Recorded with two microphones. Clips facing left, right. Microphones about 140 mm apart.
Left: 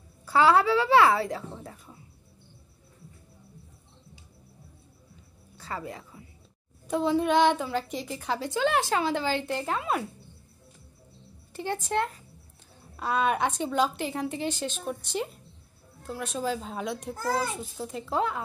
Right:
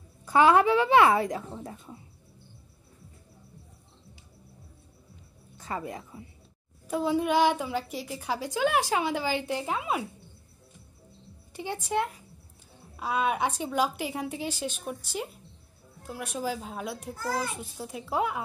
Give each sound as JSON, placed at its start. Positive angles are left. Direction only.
{"t": 0.2, "sound": "a woman's voice", "side_deg": -20}
{"t": 5.6, "sound": "a woman's voice", "side_deg": -20}
{"t": 6.9, "sound": "a woman's voice", "side_deg": -10}
{"t": 11.5, "sound": "a woman's voice", "side_deg": -15}